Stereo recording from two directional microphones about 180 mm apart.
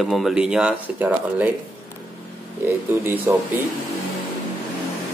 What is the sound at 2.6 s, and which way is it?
Speech, 10° right (ahead or behind).